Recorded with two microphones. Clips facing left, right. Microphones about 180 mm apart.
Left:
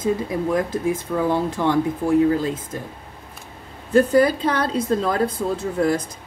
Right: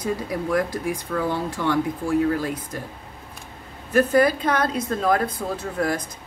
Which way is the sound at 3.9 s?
30° left (ahead or behind).